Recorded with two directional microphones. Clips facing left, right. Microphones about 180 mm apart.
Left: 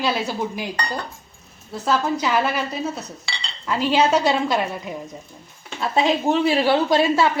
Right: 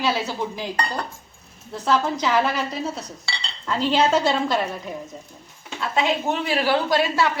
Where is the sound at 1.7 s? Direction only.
10° left (ahead or behind).